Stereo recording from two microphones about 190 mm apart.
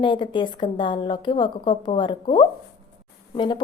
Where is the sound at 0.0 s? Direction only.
25° left (ahead or behind).